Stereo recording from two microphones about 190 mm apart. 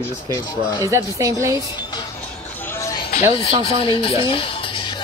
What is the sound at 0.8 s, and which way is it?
Speech, 15° right (ahead or behind).